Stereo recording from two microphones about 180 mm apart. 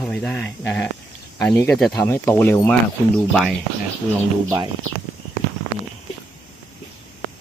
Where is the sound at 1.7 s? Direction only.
Centre (ahead or behind).